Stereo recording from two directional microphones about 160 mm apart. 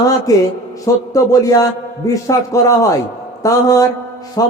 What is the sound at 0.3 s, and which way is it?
A man's voice, 20° left (ahead or behind).